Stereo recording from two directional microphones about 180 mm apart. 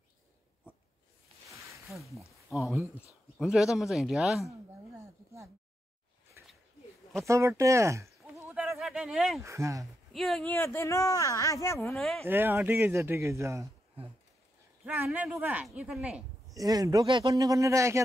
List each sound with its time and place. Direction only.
1.9 s speech: centre (ahead or behind)
4.9 s a sound: 15° right (ahead or behind)
7.2 s a man's voice: 15° right (ahead or behind)
8.2 s goat: centre (ahead or behind)
9.4 s a man's voice: 15° right (ahead or behind)
10.1 s speech: centre (ahead or behind)
11.9 s speech: centre (ahead or behind)
12.3 s a man's voice: 10° right (ahead or behind)
14.9 s speech: 10° right (ahead or behind)
16.5 s a man's voice: 20° right (ahead or behind)